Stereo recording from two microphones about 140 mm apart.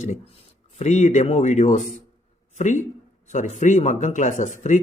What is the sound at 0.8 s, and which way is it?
Speech, 55° left (ahead or behind).